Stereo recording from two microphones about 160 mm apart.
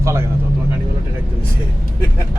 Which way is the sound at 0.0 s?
15° right (ahead or behind).